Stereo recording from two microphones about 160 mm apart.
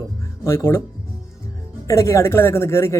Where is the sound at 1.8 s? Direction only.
20° left (ahead or behind).